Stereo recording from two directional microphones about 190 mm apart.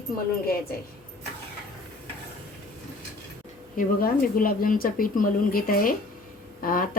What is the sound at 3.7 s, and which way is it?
A woman's voice, 50° left (ahead or behind).